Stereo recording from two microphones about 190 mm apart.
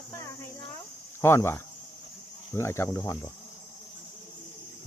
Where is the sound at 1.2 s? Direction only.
15° left (ahead or behind).